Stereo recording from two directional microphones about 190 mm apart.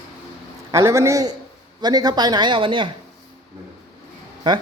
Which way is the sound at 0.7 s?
20° right (ahead or behind).